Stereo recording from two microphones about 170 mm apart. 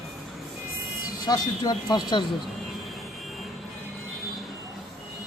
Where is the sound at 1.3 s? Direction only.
25° left (ahead or behind).